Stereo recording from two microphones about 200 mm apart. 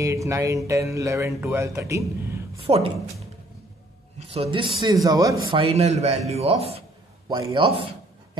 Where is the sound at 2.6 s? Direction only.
30° right (ahead or behind).